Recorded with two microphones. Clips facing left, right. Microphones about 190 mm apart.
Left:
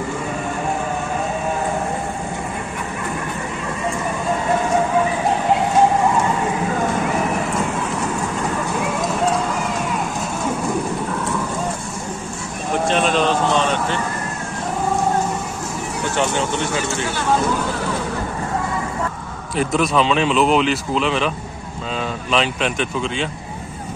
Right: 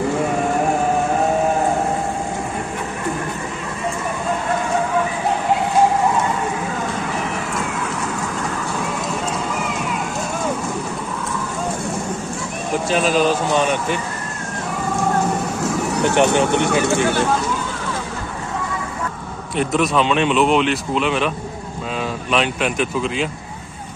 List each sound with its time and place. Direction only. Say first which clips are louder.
12.8 s a man's voice: right 1 dB; 5° right (ahead or behind)
16.3 s speech: right 5 dB; 60° right (ahead or behind)
19.5 s speech: even; centre (ahead or behind)
22.3 s speech: even; 5° right (ahead or behind)